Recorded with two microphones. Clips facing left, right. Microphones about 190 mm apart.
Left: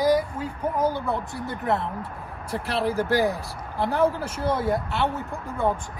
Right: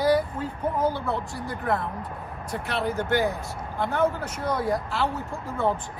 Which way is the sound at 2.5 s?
30° left (ahead or behind).